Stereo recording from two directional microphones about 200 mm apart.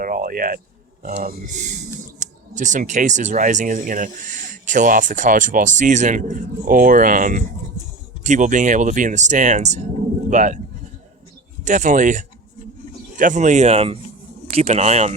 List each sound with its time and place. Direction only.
0.0 s speech: 45° right (ahead or behind)
11.6 s speech: 40° right (ahead or behind)